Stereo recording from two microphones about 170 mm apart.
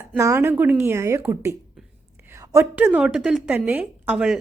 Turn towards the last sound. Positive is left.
turn(degrees=-5)  # may be behind; listen again after turning